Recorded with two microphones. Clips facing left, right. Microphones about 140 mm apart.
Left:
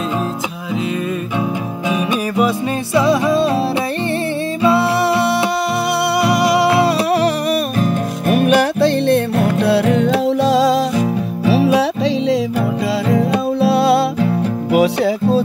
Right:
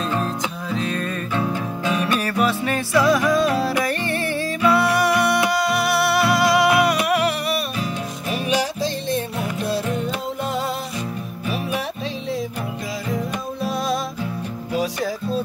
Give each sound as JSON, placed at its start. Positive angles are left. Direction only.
{"t": 1.9, "sound": "music", "side_deg": 15}
{"t": 4.6, "sound": "music", "side_deg": 25}
{"t": 13.1, "sound": "music", "side_deg": 75}